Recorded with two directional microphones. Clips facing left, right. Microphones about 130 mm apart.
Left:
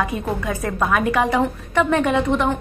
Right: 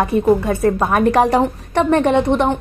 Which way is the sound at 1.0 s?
40° right (ahead or behind).